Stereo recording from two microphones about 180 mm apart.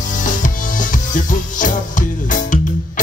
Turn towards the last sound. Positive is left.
turn(degrees=45)  # may be behind; listen again after turning